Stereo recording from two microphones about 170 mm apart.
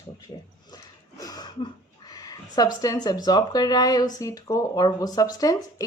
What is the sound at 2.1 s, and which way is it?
Speech, 20° left (ahead or behind).